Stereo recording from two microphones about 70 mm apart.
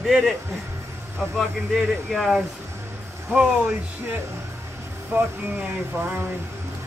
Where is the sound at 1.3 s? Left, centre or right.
Centre.